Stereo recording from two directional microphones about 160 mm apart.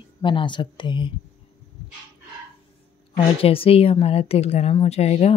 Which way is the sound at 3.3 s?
35° left (ahead or behind).